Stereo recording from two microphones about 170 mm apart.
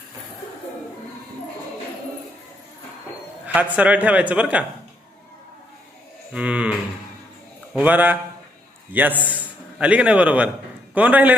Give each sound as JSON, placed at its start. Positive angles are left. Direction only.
{"t": 3.4, "sound": "a man's voice", "side_deg": -10}
{"t": 6.3, "sound": "a man's voice", "side_deg": -5}